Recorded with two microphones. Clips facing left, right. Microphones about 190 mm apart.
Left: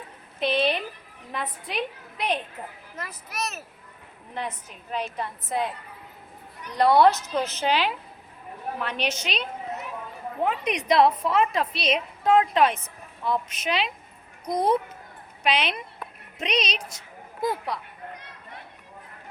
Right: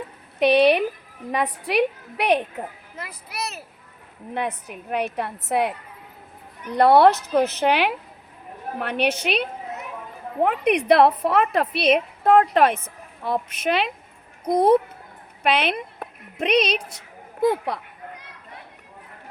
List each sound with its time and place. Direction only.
0.3 s a woman's voice: 65° right (ahead or behind)
2.9 s speech: 10° right (ahead or behind)
4.4 s a woman's voice: 60° right (ahead or behind)
6.7 s a woman's voice: 60° right (ahead or behind)